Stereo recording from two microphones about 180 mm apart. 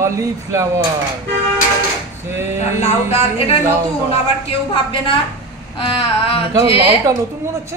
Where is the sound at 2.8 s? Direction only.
35° left (ahead or behind).